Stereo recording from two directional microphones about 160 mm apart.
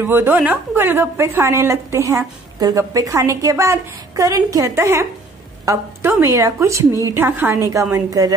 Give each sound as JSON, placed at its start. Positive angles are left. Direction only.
{"t": 0.0, "sound": "a woman's voice", "side_deg": -15}